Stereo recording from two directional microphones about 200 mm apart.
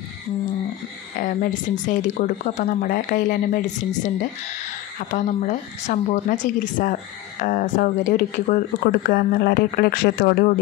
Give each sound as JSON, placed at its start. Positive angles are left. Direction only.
{"t": 1.2, "sound": "speech", "side_deg": 40}